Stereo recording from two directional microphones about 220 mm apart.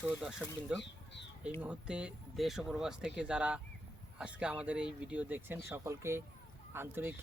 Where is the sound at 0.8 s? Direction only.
55° left (ahead or behind).